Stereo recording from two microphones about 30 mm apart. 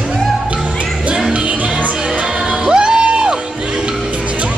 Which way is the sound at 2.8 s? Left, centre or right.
Right.